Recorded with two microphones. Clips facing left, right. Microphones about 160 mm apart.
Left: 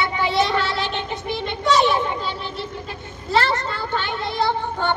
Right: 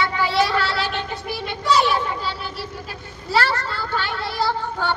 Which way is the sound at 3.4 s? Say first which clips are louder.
Even; 20° left (ahead or behind).